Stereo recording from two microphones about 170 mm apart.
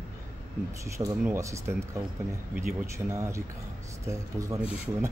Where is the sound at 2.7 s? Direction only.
15° right (ahead or behind).